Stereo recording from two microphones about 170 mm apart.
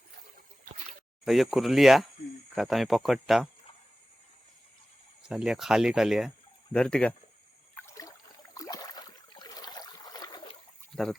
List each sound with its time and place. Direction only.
1.2 s speech: centre (ahead or behind)
5.2 s speech: 5° right (ahead or behind)
7.8 s a sound: 20° left (ahead or behind)
8.5 s boat: 20° left (ahead or behind)